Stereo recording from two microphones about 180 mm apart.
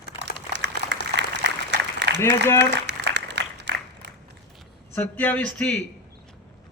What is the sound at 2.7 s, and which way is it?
Applause, 70° right (ahead or behind).